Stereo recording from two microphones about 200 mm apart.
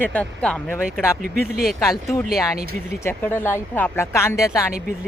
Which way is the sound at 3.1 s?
10° left (ahead or behind).